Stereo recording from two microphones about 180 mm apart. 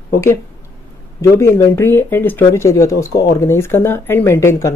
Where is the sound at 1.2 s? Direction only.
15° left (ahead or behind).